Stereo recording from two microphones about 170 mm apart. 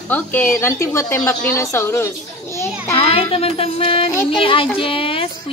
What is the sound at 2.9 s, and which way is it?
Speech, 35° left (ahead or behind).